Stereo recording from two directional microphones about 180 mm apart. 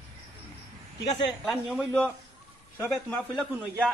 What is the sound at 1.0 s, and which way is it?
Speech, 20° left (ahead or behind).